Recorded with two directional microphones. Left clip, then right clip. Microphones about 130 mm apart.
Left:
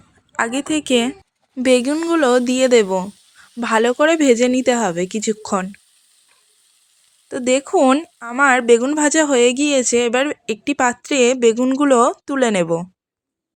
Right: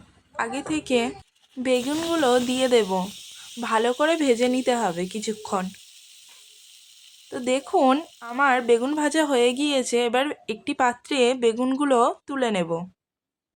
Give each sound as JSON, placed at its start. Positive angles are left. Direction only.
{"t": 0.3, "sound": "speech", "side_deg": 55}
{"t": 1.9, "sound": "speech", "side_deg": 40}
{"t": 7.3, "sound": "speech", "side_deg": 40}